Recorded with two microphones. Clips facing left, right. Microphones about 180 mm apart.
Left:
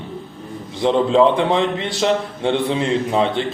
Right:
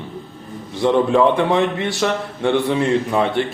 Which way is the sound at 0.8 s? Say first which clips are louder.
Even; 20° left (ahead or behind).